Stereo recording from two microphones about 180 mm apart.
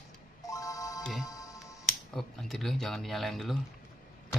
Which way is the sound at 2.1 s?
Centre (ahead or behind).